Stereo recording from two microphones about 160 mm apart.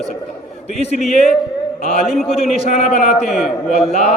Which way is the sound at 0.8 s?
40° left (ahead or behind).